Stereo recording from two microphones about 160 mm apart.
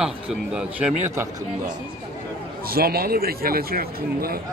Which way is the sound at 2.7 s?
70° right (ahead or behind).